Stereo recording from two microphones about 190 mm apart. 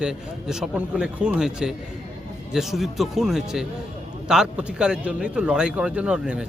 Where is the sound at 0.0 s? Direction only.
5° right (ahead or behind).